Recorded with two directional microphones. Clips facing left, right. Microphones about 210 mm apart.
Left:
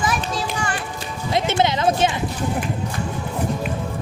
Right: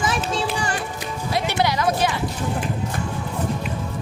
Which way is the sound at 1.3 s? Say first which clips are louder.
Left 2 dB; 20° left (ahead or behind).